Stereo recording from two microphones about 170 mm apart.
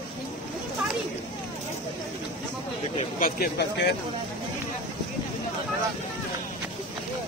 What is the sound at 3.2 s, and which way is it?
Speech, 70° left (ahead or behind).